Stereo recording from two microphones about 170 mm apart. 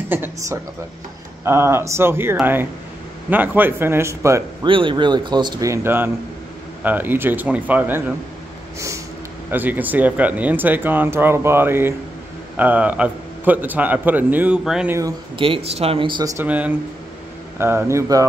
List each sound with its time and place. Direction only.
0.1 s speech: 10° right (ahead or behind)
4.6 s speech: 30° right (ahead or behind); by 8.0 s 10° right (ahead or behind)
8.7 s snort: 15° right (ahead or behind)
9.5 s speech: 10° right (ahead or behind)
14.9 s speech: 20° right (ahead or behind)
15.3 s speech: 30° right (ahead or behind)
16.4 s speech: 10° right (ahead or behind)